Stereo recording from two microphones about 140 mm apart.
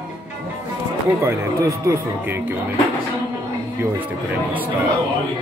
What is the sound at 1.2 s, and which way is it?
Speech, 20° right (ahead or behind).